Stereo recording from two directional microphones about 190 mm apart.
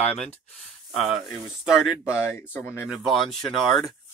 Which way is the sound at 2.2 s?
15° left (ahead or behind).